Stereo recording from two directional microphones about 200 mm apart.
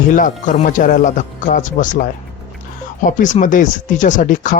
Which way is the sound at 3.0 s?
40° left (ahead or behind).